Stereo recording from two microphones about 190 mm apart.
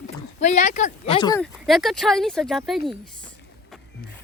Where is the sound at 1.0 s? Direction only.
25° left (ahead or behind).